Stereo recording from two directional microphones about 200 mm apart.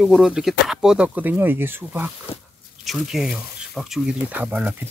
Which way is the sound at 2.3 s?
30° left (ahead or behind).